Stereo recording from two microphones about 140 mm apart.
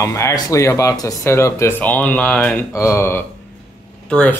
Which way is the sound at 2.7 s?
20° left (ahead or behind).